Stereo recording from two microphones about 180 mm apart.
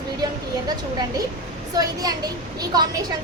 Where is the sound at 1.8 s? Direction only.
20° right (ahead or behind).